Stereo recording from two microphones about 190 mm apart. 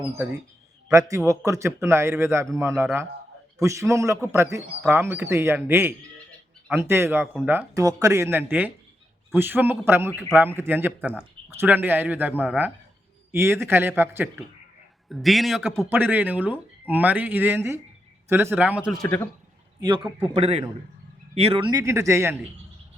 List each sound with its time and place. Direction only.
0.0 s speech: 10° right (ahead or behind)
15.1 s a man's voice: centre (ahead or behind)
15.9 s speech: 10° right (ahead or behind)
19.0 s speech: 10° left (ahead or behind)
19.8 s a man's voice: 20° right (ahead or behind)